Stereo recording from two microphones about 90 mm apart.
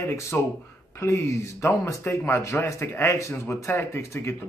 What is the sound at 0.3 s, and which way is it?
Speech, 20° left (ahead or behind).